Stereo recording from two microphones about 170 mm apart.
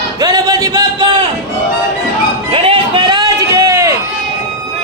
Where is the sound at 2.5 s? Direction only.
30° right (ahead or behind); by 3.9 s 15° right (ahead or behind).